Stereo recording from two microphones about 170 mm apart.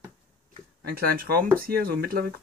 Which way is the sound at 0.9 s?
60° right (ahead or behind).